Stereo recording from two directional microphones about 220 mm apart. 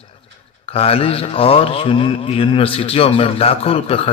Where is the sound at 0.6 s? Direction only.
25° left (ahead or behind).